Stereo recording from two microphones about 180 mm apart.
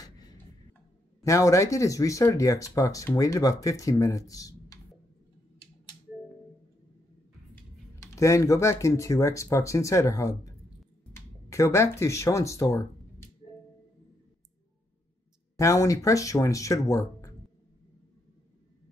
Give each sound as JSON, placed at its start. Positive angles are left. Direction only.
{"t": 1.2, "sound": "speech", "side_deg": 15}
{"t": 7.5, "sound": "speech", "side_deg": 15}
{"t": 15.5, "sound": "speech", "side_deg": 20}